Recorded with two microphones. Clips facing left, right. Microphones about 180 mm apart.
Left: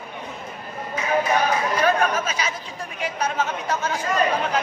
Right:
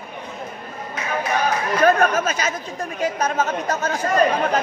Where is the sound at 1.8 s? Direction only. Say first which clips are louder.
Right 7 dB; 45° right (ahead or behind).